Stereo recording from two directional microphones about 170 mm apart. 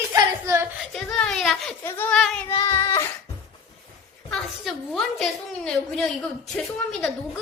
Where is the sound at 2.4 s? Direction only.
20° left (ahead or behind).